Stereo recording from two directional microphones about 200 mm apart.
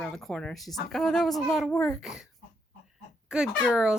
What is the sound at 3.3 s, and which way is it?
Speech, 5° right (ahead or behind).